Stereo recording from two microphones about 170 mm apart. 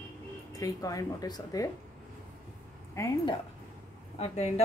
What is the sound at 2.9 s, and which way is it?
Speech, 20° left (ahead or behind).